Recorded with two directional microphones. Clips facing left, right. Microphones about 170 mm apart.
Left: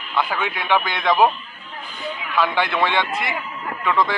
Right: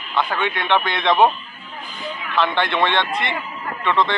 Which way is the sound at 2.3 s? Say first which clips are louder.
Right 1 dB; 5° left (ahead or behind).